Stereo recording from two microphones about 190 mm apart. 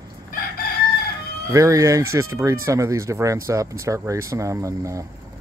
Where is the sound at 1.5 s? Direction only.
15° right (ahead or behind).